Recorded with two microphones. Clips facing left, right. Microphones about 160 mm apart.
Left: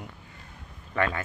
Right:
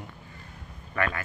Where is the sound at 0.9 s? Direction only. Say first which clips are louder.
Left 2 dB; 15° left (ahead or behind).